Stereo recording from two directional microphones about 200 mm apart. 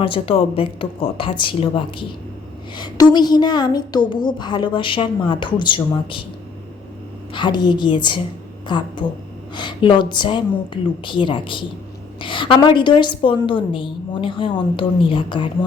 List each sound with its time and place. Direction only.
0.0 s a woman's voice: 25° left (ahead or behind)
7.3 s a woman's voice: 20° left (ahead or behind)